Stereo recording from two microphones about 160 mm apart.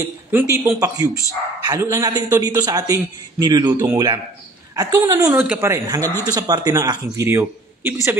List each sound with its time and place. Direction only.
0.3 s a man's voice: 15° right (ahead or behind)